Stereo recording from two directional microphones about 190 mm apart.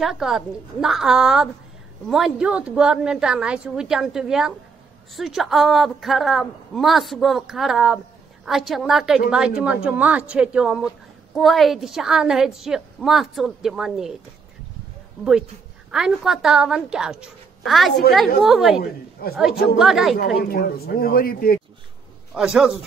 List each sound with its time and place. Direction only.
0.0 s a woman's voice: centre (ahead or behind)
15.9 s a woman's voice: 5° right (ahead or behind)
19.2 s a man's voice: 55° left (ahead or behind)
19.8 s a woman's voice: centre (ahead or behind)
20.3 s a man's voice: 50° left (ahead or behind)
22.3 s a woman's voice: 5° right (ahead or behind)